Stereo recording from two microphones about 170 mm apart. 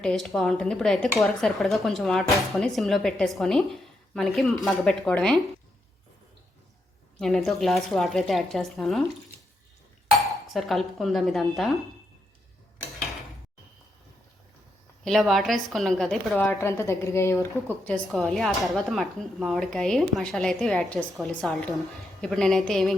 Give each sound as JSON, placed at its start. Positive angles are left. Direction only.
{"t": 0.0, "sound": "speech", "side_deg": 5}
{"t": 7.2, "sound": "speech", "side_deg": 0}
{"t": 10.2, "sound": "dishes", "side_deg": 0}
{"t": 15.0, "sound": "speech", "side_deg": 0}
{"t": 16.6, "sound": "a woman's voice", "side_deg": 15}
{"t": 18.1, "sound": "speech", "side_deg": 0}